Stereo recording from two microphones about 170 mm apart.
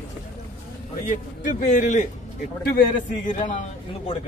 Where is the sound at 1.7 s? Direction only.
45° left (ahead or behind).